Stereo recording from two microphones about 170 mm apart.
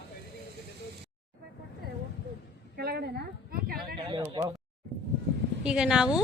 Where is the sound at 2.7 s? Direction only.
70° right (ahead or behind).